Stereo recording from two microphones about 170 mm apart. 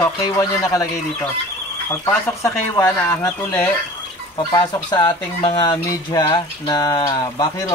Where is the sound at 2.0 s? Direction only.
20° left (ahead or behind).